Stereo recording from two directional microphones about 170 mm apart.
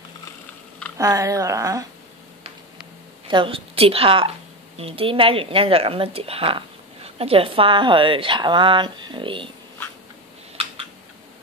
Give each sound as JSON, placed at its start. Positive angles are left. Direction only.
{"t": 0.9, "sound": "speech", "side_deg": -20}
{"t": 3.3, "sound": "speech", "side_deg": -30}